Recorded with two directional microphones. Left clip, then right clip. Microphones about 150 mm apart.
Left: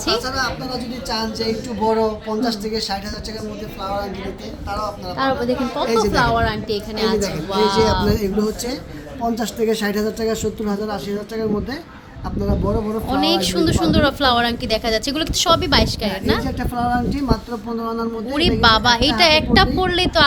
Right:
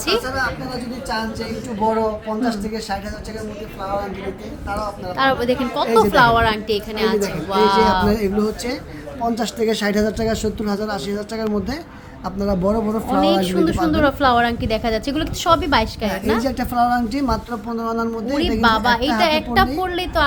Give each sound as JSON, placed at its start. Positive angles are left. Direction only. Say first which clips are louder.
{"t": 0.0, "sound": "a woman's voice", "louder": "even", "side_deg": -10}
{"t": 4.7, "sound": "a woman's voice", "louder": "even", "side_deg": -10}
{"t": 8.1, "sound": "speech", "louder": "right 1 dB", "side_deg": -25}
{"t": 13.1, "sound": "a woman's voice", "louder": "right 1 dB", "side_deg": 10}
{"t": 16.4, "sound": "a woman's voice", "louder": "right 4 dB", "side_deg": -45}
{"t": 18.6, "sound": "a woman's voice", "louder": "left 2 dB", "side_deg": 15}